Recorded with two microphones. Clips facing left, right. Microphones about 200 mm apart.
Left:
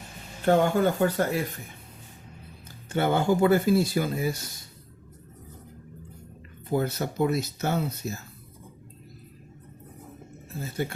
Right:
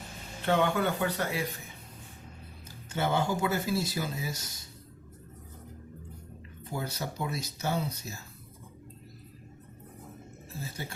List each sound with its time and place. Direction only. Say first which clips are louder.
0.4 s speech: left 6 dB; 45° left (ahead or behind)
2.9 s speech: left 6 dB; 55° left (ahead or behind)
6.7 s speech: left 9 dB; 55° left (ahead or behind)
10.6 s speech: left 9 dB; 55° left (ahead or behind)